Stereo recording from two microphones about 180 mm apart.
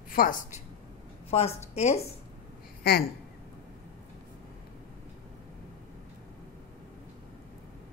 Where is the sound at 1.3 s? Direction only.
35° left (ahead or behind).